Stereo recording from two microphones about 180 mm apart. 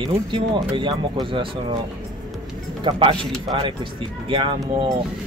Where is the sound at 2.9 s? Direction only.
30° right (ahead or behind).